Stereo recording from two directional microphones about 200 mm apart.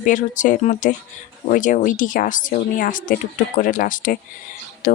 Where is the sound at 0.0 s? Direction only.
40° left (ahead or behind).